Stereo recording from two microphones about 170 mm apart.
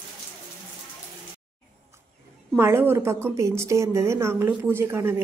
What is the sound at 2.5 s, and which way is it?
A woman's voice, 15° right (ahead or behind).